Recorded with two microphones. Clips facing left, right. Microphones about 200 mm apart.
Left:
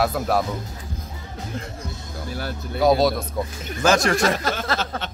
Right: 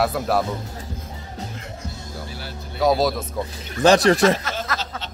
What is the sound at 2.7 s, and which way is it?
Speech, centre (ahead or behind).